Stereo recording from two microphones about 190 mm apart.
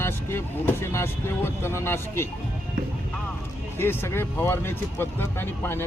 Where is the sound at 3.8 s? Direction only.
10° left (ahead or behind).